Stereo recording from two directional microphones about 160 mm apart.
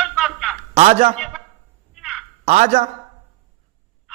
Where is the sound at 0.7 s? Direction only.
40° right (ahead or behind).